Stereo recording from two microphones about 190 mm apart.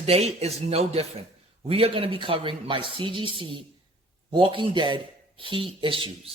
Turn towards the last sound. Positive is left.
turn(degrees=-25)  # may be behind; listen again after turning